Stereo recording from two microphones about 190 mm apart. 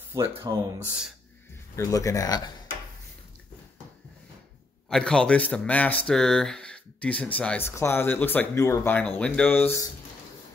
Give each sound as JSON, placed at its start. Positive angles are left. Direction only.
{"t": 0.5, "sound": "speech", "side_deg": -20}
{"t": 1.8, "sound": "speech", "side_deg": 15}
{"t": 4.8, "sound": "speech", "side_deg": 5}